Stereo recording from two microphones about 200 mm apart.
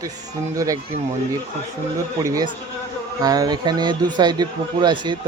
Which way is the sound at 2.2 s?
15° right (ahead or behind).